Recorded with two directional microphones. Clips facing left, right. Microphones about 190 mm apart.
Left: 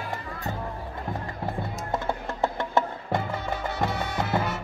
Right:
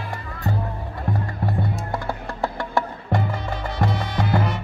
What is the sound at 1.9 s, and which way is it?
Music, 20° left (ahead or behind).